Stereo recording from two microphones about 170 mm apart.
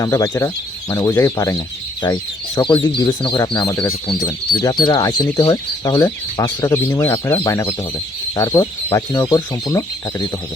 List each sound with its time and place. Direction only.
0.0 s speech: 20° left (ahead or behind)